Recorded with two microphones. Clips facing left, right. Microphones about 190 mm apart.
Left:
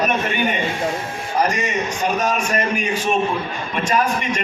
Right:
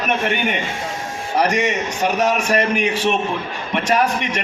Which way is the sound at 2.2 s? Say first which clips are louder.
Right 3 dB; 70° right (ahead or behind).